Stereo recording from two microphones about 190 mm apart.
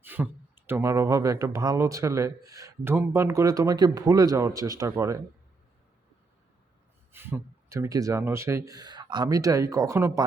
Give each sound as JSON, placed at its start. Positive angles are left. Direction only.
{"t": 0.0, "sound": "speech", "side_deg": -10}
{"t": 7.1, "sound": "speech", "side_deg": -10}